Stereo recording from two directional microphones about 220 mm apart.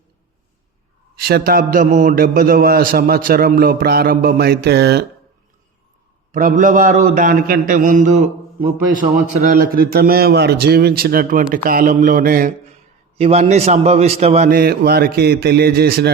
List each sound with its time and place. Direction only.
1.2 s a man's voice: 45° right (ahead or behind)
6.3 s a man's voice: 35° right (ahead or behind)
14.5 s a man's voice: 45° right (ahead or behind)